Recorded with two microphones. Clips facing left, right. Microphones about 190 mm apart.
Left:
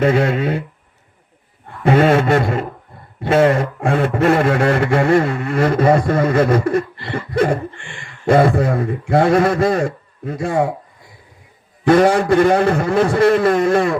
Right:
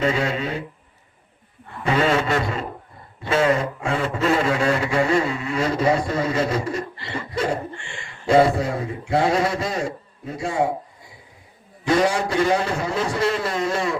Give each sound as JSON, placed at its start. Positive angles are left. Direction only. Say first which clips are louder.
{"t": 0.0, "sound": "speech", "louder": "left 7 dB", "side_deg": 55}
{"t": 1.6, "sound": "a man's voice", "louder": "left 7 dB", "side_deg": 55}
{"t": 11.9, "sound": "speech", "louder": "left 8 dB", "side_deg": 55}